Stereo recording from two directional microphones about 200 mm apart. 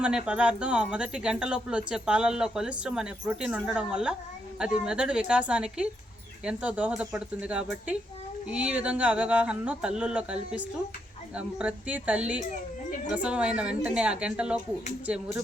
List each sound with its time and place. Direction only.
0.0 s speech: 5° right (ahead or behind)